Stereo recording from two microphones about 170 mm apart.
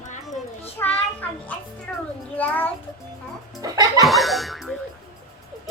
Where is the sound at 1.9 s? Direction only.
10° left (ahead or behind).